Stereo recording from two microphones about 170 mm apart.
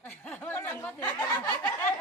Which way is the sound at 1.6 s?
10° left (ahead or behind).